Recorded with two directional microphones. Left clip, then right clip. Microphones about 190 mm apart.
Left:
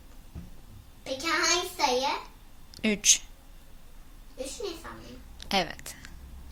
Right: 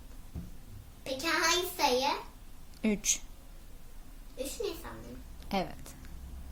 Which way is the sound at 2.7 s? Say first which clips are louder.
Left 8 dB; 5° right (ahead or behind).